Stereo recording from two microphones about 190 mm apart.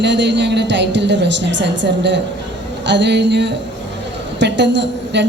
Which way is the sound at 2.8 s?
65° right (ahead or behind).